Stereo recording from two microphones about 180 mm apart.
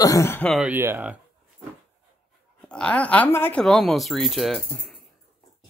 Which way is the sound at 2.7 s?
5° left (ahead or behind).